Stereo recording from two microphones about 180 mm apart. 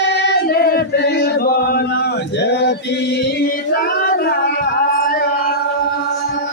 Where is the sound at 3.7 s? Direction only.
55° left (ahead or behind).